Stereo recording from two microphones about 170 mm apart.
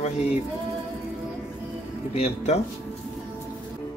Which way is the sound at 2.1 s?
40° left (ahead or behind).